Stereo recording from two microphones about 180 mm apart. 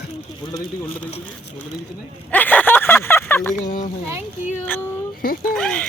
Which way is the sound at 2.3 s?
10° left (ahead or behind).